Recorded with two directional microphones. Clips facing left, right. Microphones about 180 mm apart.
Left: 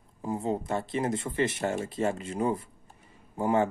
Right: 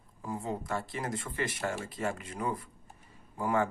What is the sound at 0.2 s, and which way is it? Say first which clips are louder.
Speech: left 6 dB; 25° left (ahead or behind).